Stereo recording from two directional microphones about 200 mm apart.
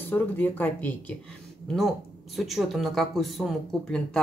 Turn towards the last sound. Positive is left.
turn(degrees=0)  # may be behind; listen again after turning